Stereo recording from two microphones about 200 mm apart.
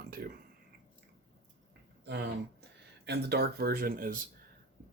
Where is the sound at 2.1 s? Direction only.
55° right (ahead or behind).